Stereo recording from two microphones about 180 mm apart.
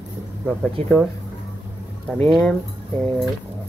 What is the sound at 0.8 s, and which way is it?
Speech, 35° right (ahead or behind).